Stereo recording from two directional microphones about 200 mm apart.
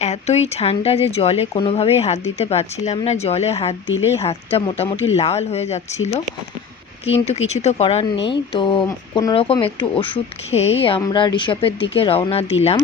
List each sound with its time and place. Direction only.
0.0 s a woman's voice: 35° left (ahead or behind)